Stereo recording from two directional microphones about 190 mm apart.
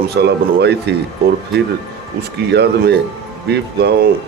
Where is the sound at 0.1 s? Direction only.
60° right (ahead or behind).